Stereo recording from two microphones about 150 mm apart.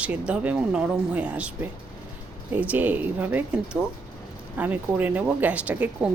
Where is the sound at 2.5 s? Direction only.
10° right (ahead or behind).